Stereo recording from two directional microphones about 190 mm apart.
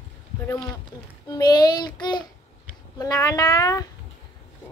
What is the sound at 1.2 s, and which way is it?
A child's voice, 20° left (ahead or behind).